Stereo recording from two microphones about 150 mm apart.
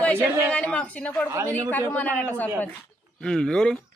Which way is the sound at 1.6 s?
10° left (ahead or behind).